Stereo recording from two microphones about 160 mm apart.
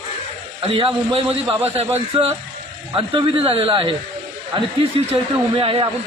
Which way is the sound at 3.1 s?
35° right (ahead or behind).